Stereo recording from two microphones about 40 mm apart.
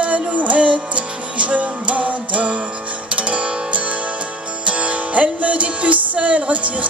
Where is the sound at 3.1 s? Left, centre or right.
Right.